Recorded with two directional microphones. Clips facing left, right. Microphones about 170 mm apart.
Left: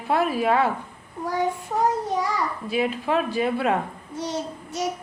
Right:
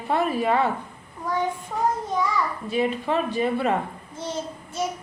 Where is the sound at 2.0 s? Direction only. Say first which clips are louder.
Even; 70° left (ahead or behind).